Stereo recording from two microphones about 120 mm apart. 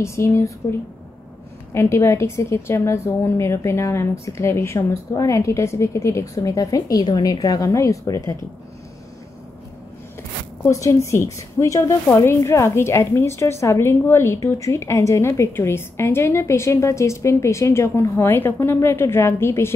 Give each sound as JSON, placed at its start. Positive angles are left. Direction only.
{"t": 0.0, "sound": "a woman's voice", "side_deg": 25}
{"t": 10.6, "sound": "a woman's voice", "side_deg": 25}